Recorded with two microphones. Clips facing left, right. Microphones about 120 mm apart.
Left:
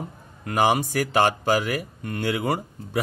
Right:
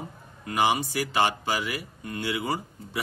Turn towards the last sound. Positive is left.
turn(degrees=45)  # may be behind; listen again after turning